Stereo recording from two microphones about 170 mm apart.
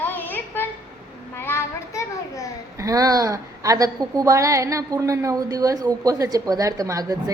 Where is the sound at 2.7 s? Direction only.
20° right (ahead or behind).